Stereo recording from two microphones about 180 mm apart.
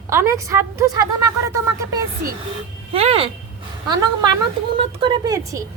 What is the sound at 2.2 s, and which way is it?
Speech, 55° right (ahead or behind).